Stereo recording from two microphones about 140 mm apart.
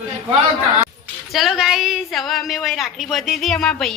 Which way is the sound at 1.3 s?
Centre (ahead or behind).